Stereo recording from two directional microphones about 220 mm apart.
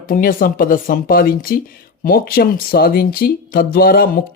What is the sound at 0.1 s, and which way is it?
Speech, 40° left (ahead or behind).